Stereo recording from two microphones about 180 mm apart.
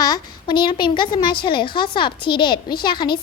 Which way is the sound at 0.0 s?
25° left (ahead or behind).